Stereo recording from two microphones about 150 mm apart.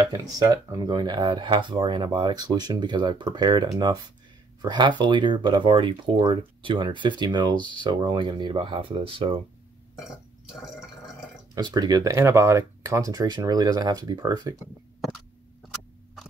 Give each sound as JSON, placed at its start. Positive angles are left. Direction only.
{"t": 0.0, "sound": "speech", "side_deg": -25}
{"t": 11.5, "sound": "speech", "side_deg": -25}